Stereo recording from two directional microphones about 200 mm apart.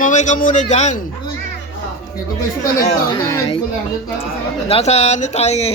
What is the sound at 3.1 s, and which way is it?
Speech, 25° left (ahead or behind).